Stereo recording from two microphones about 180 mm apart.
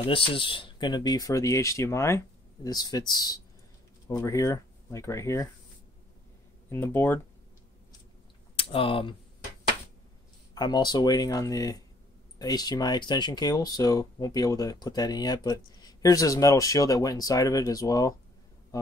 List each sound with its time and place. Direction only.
0.0 s speech: 30° left (ahead or behind)
6.7 s speech: 10° left (ahead or behind)
8.5 s speech: 30° left (ahead or behind)
10.5 s speech: 25° left (ahead or behind)